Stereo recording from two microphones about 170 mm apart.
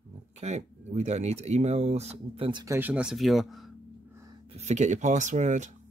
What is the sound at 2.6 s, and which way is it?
Speech, 15° right (ahead or behind).